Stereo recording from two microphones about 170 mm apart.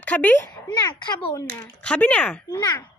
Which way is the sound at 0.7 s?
25° left (ahead or behind).